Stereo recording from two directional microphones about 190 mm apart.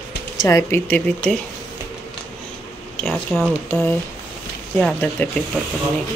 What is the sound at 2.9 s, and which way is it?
Speech, centre (ahead or behind).